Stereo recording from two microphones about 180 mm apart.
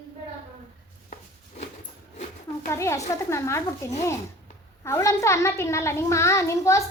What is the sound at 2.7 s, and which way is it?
A child's voice, 15° left (ahead or behind).